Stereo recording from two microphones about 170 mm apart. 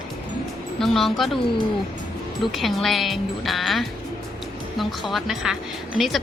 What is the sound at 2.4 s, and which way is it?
Speech, centre (ahead or behind).